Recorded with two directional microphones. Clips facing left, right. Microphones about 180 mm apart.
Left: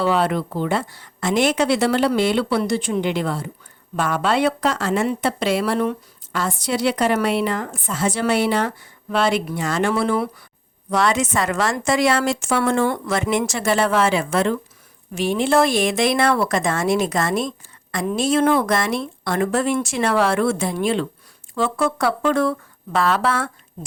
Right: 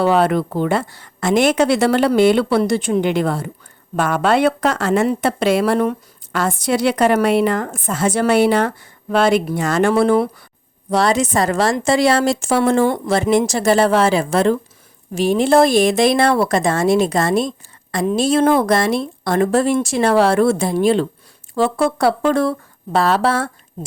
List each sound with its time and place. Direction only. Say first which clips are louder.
0.0 s speech: right 4 dB; 50° right (ahead or behind)
10.9 s a woman's voice: right 3 dB; 35° right (ahead or behind)
18.2 s speech: right 3 dB; 35° right (ahead or behind)